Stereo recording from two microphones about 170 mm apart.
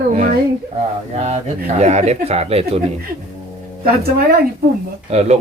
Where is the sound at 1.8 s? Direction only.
40° right (ahead or behind).